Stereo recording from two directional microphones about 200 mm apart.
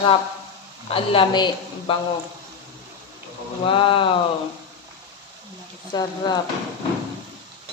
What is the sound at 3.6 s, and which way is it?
Speech, 25° left (ahead or behind).